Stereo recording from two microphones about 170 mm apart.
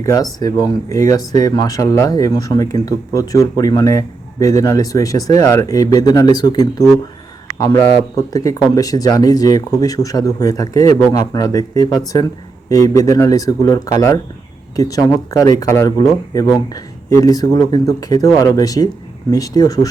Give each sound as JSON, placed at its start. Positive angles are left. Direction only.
{"t": 0.0, "sound": "speech", "side_deg": 20}